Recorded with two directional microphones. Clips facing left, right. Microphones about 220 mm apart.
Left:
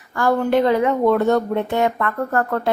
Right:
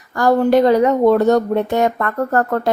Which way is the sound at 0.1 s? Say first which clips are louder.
Right 4 dB; 40° right (ahead or behind).